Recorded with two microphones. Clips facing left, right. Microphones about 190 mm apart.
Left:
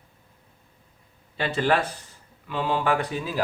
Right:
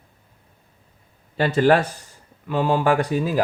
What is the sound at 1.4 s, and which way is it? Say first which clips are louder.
Speech: right 6 dB; 45° right (ahead or behind).